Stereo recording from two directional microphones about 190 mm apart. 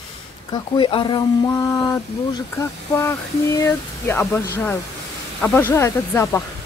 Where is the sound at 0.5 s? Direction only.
25° left (ahead or behind).